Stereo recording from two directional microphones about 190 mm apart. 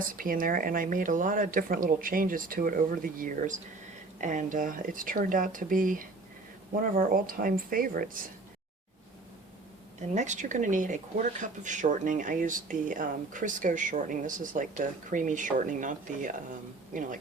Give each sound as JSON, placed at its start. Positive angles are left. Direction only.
{"t": 0.0, "sound": "speech", "side_deg": -45}
{"t": 10.2, "sound": "speech", "side_deg": -40}